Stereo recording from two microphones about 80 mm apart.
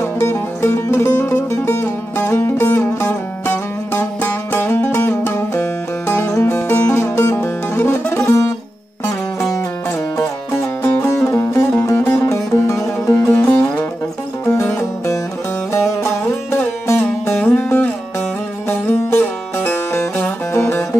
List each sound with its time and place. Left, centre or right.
0.0 s music: left
3.4 s music: left
6.7 s music: centre
7.0 s music: left
7.3 s music: left
8.3 s music: left
10.1 s music: left
13.3 s music: left
14.4 s music: left
17.0 s music: left